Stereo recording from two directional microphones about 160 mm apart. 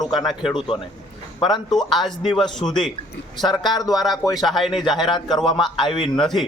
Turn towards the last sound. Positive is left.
turn(degrees=0)  # may be behind; listen again after turning